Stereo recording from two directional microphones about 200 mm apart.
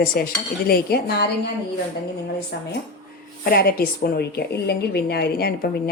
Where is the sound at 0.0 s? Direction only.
45° left (ahead or behind).